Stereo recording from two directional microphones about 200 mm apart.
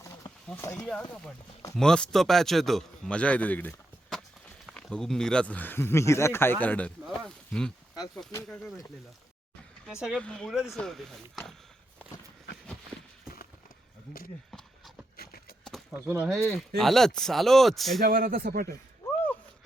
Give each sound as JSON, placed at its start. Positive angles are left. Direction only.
{"t": 0.0, "sound": "a sound", "side_deg": 15}
{"t": 1.7, "sound": "speech", "side_deg": 5}
{"t": 7.3, "sound": "a sound", "side_deg": 5}
{"t": 8.3, "sound": "speech", "side_deg": 10}
{"t": 10.0, "sound": "speech", "side_deg": 0}
{"t": 15.1, "sound": "clip-clop", "side_deg": 50}
{"t": 15.6, "sound": "a sound", "side_deg": 0}
{"t": 16.0, "sound": "speech", "side_deg": -5}
{"t": 18.0, "sound": "speech", "side_deg": -45}